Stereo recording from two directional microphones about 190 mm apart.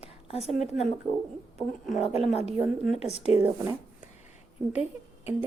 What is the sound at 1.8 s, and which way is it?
Speech, 35° left (ahead or behind).